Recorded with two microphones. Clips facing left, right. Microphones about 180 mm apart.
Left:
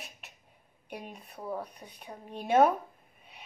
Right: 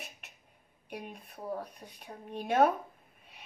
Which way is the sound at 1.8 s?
25° left (ahead or behind).